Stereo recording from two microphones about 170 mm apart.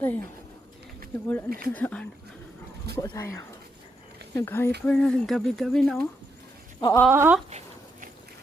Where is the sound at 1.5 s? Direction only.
60° right (ahead or behind).